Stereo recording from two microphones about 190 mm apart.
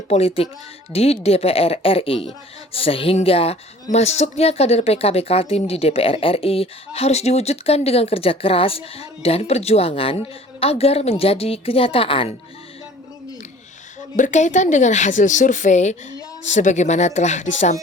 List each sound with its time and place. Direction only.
0.1 s a woman's voice: 30° left (ahead or behind)
14.2 s speech: 40° left (ahead or behind)